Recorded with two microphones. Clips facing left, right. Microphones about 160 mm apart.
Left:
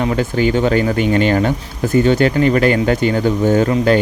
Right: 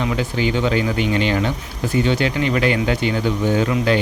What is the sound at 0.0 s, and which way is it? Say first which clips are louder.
Speech: left 5 dB; 50° left (ahead or behind).